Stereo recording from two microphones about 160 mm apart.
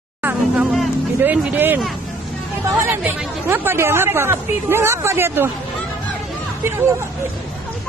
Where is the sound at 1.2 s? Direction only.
10° right (ahead or behind).